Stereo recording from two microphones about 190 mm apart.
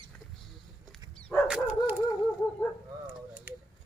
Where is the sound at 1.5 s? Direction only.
5° right (ahead or behind).